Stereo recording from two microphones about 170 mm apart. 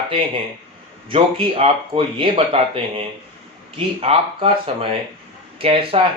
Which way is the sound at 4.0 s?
35° right (ahead or behind).